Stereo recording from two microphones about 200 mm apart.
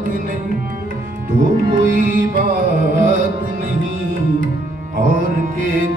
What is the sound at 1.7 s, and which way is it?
Music, 40° right (ahead or behind).